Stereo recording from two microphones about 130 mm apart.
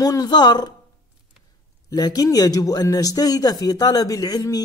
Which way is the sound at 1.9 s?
30° left (ahead or behind).